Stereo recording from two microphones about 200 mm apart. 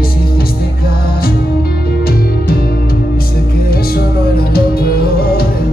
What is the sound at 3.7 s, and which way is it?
Music, 50° left (ahead or behind).